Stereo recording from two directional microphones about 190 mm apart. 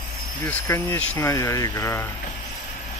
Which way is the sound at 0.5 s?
10° left (ahead or behind).